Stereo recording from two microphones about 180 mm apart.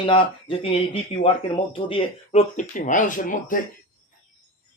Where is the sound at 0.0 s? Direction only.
30° left (ahead or behind).